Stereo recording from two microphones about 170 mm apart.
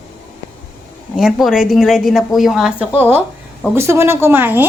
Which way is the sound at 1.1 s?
Centre (ahead or behind).